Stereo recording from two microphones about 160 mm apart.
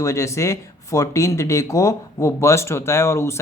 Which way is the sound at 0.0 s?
20° left (ahead or behind).